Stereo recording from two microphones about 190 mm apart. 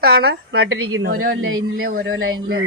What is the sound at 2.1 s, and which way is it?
Speech, 90° right.